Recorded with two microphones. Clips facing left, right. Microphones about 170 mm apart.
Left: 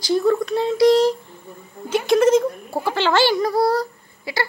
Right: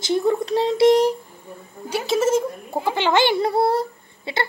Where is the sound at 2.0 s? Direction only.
5° right (ahead or behind).